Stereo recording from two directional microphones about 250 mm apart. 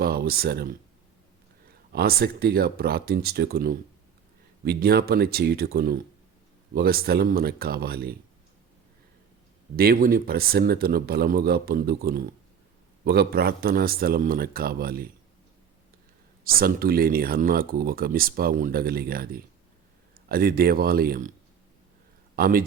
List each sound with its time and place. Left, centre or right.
0.0 s speech: right
1.9 s speech: right
9.7 s speech: right
16.4 s speech: right
22.4 s a man's voice: right